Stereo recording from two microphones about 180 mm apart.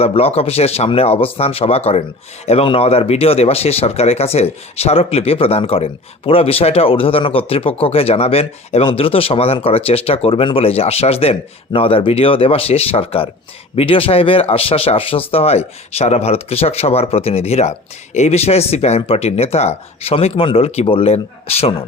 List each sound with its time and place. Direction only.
0.0 s speech: 35° left (ahead or behind)